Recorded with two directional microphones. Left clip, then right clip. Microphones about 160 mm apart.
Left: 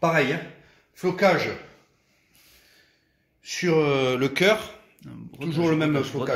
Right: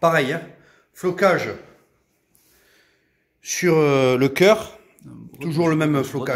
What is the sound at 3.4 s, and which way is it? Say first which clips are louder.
Speech: right 4 dB; 65° right (ahead or behind).